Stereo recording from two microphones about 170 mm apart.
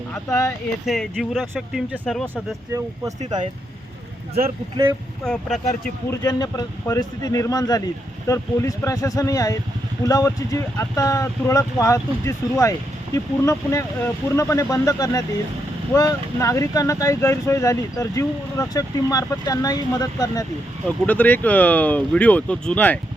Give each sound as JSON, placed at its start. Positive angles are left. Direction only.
{"t": 0.1, "sound": "speech", "side_deg": 20}
{"t": 0.9, "sound": "speech", "side_deg": 0}
{"t": 2.3, "sound": "speech", "side_deg": -15}
{"t": 5.2, "sound": "speech", "side_deg": 5}
{"t": 6.2, "sound": "speech", "side_deg": 25}
{"t": 21.1, "sound": "speech", "side_deg": 10}